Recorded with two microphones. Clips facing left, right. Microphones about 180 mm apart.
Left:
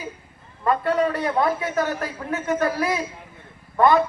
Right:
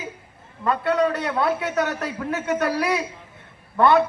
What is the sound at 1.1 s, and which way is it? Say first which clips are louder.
A man's voice: left 1 dB; 75° right (ahead or behind).